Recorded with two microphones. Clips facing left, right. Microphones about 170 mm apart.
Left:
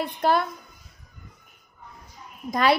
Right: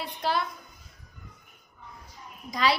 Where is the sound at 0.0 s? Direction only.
50° left (ahead or behind).